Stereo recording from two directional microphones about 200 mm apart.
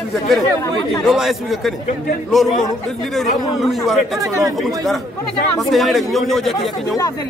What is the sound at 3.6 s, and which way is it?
Speech, centre (ahead or behind).